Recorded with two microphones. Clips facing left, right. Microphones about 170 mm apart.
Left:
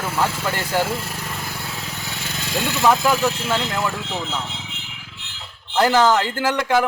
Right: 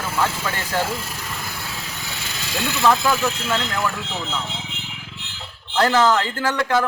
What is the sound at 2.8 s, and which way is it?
A man's voice, 15° left (ahead or behind).